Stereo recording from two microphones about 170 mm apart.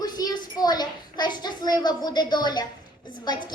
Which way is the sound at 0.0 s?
25° left (ahead or behind).